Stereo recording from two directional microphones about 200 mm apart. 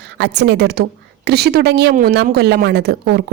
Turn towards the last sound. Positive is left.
turn(degrees=-55)  # may be behind; listen again after turning